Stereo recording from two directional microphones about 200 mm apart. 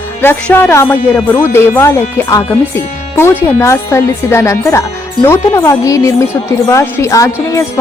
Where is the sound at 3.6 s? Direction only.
15° left (ahead or behind).